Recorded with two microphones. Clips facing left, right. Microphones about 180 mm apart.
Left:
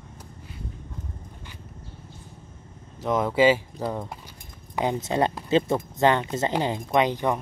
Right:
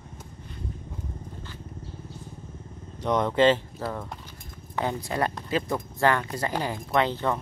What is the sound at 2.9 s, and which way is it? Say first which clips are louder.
Speech: left 1 dB; 5° left (ahead or behind).